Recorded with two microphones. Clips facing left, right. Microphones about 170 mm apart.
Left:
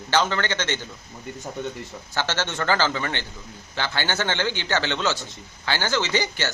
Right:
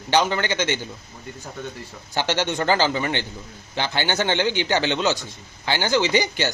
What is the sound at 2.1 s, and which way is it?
A man's voice, 15° right (ahead or behind).